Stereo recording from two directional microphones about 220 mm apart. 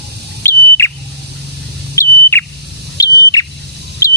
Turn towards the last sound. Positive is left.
turn(degrees=15)  # may be behind; listen again after turning